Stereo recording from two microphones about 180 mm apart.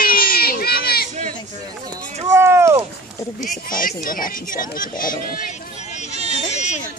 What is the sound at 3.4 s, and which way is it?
Speech, 50° left (ahead or behind).